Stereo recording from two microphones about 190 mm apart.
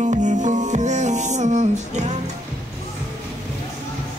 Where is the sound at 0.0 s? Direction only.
40° right (ahead or behind).